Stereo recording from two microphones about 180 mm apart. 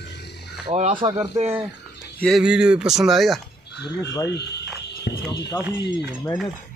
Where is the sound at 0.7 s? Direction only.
35° right (ahead or behind).